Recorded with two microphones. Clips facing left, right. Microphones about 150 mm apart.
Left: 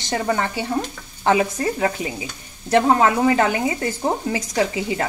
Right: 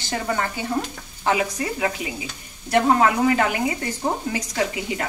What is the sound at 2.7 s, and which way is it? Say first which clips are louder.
Speech: left 2 dB; 25° left (ahead or behind).